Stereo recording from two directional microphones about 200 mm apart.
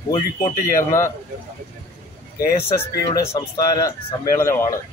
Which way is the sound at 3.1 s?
20° left (ahead or behind).